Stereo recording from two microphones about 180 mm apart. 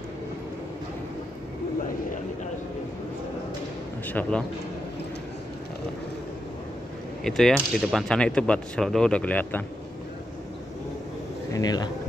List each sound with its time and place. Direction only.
4.1 s a man's voice: 10° left (ahead or behind)
7.2 s speech: centre (ahead or behind)
11.5 s speech: 20° left (ahead or behind)